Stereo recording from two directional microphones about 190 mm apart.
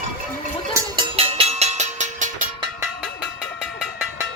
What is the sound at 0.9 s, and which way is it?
Music, 30° right (ahead or behind).